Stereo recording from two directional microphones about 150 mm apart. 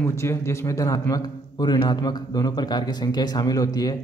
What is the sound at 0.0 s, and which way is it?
A man's voice, 20° left (ahead or behind).